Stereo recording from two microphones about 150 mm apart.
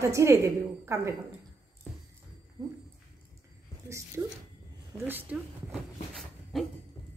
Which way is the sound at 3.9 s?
20° right (ahead or behind).